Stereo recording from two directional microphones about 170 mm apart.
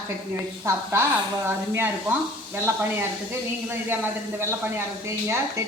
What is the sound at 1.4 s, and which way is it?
Speech, 15° right (ahead or behind).